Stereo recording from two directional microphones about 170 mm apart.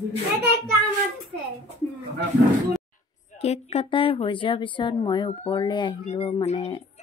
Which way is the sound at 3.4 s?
35° left (ahead or behind).